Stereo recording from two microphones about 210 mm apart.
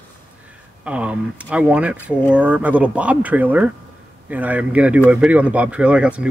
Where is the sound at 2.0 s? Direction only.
10° left (ahead or behind).